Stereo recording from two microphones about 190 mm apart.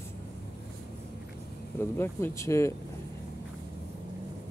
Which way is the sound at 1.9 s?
10° left (ahead or behind).